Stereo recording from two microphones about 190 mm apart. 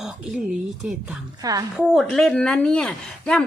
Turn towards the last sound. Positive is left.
turn(degrees=5)  # may be behind; listen again after turning